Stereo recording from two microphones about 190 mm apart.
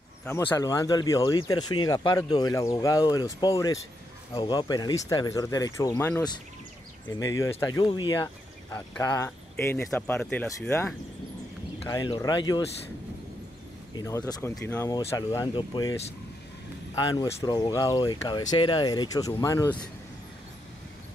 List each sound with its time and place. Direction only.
0.2 s speech: 15° left (ahead or behind)
8.7 s speech: 10° left (ahead or behind)
11.8 s speech: 20° left (ahead or behind)
13.9 s speech: 20° left (ahead or behind)